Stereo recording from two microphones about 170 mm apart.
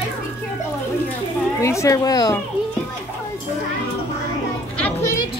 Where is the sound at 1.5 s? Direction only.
15° left (ahead or behind).